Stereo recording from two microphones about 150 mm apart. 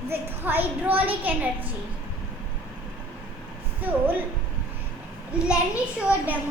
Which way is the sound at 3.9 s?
10° right (ahead or behind).